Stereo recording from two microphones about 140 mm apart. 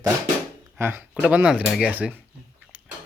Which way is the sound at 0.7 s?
15° right (ahead or behind).